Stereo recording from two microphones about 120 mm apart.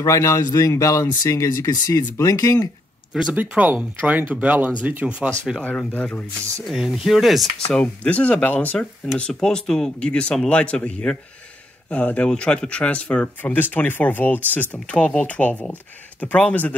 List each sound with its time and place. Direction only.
0.0 s speech: 25° left (ahead or behind)
3.1 s speech: 5° right (ahead or behind)
5.6 s speech: 10° left (ahead or behind)
6.6 s speech: centre (ahead or behind)
7.7 s speech: 10° left (ahead or behind)